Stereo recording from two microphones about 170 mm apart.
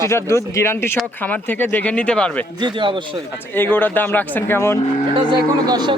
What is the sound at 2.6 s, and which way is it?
Speech, 25° right (ahead or behind).